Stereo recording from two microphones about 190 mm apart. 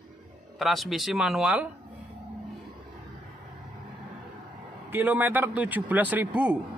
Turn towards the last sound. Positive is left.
turn(degrees=-5)  # may be behind; listen again after turning